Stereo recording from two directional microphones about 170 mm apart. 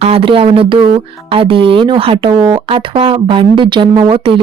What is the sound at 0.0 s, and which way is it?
Speech, 35° right (ahead or behind).